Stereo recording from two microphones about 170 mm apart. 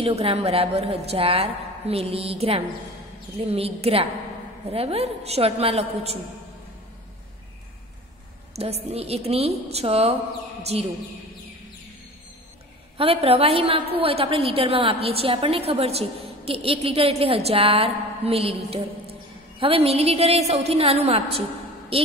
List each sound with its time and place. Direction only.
0.0 s a woman's voice: 35° right (ahead or behind)
8.5 s a woman's voice: 35° right (ahead or behind)
12.9 s a woman's voice: 35° right (ahead or behind)